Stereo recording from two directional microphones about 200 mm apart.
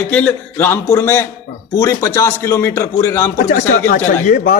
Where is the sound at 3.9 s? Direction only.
45° left (ahead or behind).